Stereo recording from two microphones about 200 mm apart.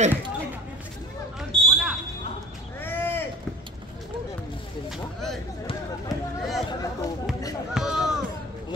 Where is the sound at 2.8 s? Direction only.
10° left (ahead or behind).